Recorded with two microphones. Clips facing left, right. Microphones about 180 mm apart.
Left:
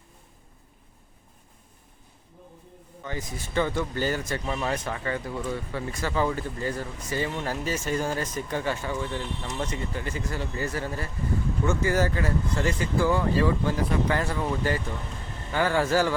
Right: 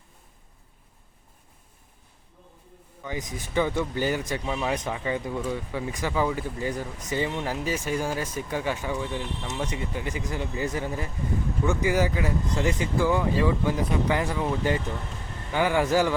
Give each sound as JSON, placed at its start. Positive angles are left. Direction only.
{"t": 3.0, "sound": "speech", "side_deg": -15}